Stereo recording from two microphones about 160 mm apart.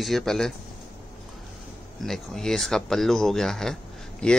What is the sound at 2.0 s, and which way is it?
Speech, 5° left (ahead or behind).